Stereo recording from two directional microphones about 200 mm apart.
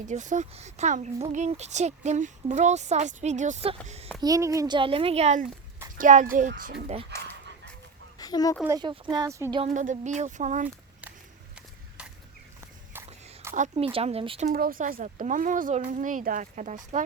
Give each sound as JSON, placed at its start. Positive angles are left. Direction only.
{"t": 0.0, "sound": "speech", "side_deg": -40}
{"t": 4.2, "sound": "a child's voice", "side_deg": -15}
{"t": 6.8, "sound": "a child's voice", "side_deg": -30}
{"t": 8.2, "sound": "speech", "side_deg": 20}
{"t": 8.6, "sound": "a child's voice", "side_deg": -20}
{"t": 9.6, "sound": "speech", "side_deg": -35}
{"t": 13.5, "sound": "a child's voice", "side_deg": -40}
{"t": 14.4, "sound": "speech", "side_deg": -50}